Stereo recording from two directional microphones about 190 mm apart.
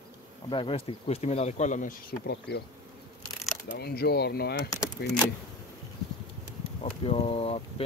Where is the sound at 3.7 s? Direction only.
55° left (ahead or behind).